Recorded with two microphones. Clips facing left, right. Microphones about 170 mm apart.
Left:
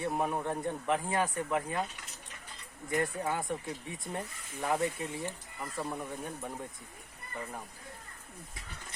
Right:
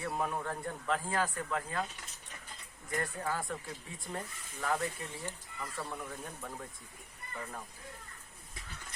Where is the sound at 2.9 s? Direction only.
20° left (ahead or behind).